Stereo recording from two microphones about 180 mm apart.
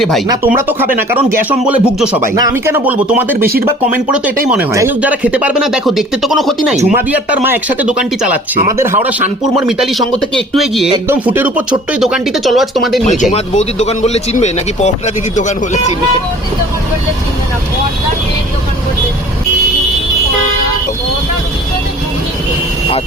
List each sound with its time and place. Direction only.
0.4 s speech: 10° right (ahead or behind)
4.7 s speech: 15° right (ahead or behind)
11.1 s speech: 10° right (ahead or behind)
13.3 s speech: 40° left (ahead or behind)